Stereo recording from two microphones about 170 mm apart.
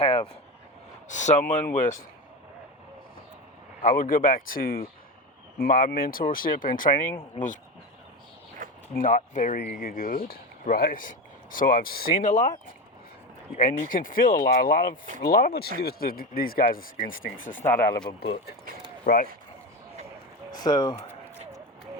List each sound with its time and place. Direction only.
0.0 s speech: 35° left (ahead or behind)
1.0 s speech: 45° left (ahead or behind)
3.8 s speech: 55° left (ahead or behind)
8.6 s a sound: 50° right (ahead or behind)
9.0 s speech: 50° left (ahead or behind)
9.6 s speech: 60° left (ahead or behind)
13.9 s speech: 55° left (ahead or behind)
17.6 s speech: 15° left (ahead or behind)
18.2 s speech: 70° left (ahead or behind)
19.0 s speech: 55° left (ahead or behind)
20.5 s speech: 25° left (ahead or behind)